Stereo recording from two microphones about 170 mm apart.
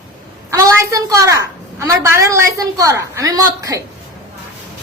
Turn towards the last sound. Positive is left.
turn(degrees=-20)  # may be behind; listen again after turning